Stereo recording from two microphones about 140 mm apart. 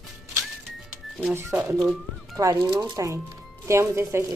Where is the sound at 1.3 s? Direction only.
15° right (ahead or behind).